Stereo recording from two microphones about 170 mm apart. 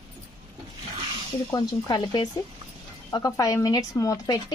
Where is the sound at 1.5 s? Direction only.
25° left (ahead or behind).